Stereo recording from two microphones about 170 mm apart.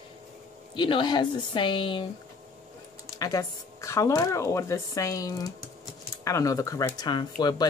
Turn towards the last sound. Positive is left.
turn(degrees=25)  # may be behind; listen again after turning